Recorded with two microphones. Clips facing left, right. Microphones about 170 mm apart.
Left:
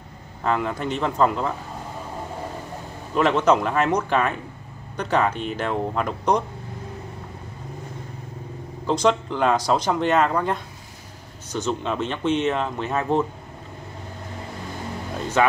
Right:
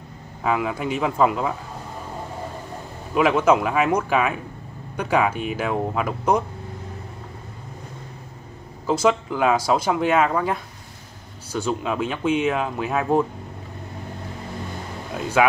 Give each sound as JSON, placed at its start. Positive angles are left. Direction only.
{"t": 0.4, "sound": "speech", "side_deg": -5}
{"t": 3.2, "sound": "speech", "side_deg": -5}
{"t": 8.8, "sound": "speech", "side_deg": -5}
{"t": 15.4, "sound": "speech", "side_deg": -5}